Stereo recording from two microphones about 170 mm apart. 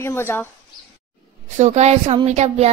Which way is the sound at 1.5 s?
40° right (ahead or behind).